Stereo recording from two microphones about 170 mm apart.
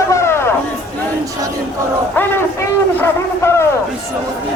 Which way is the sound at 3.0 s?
15° left (ahead or behind).